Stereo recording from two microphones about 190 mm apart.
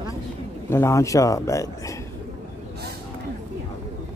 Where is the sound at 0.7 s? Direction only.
15° left (ahead or behind).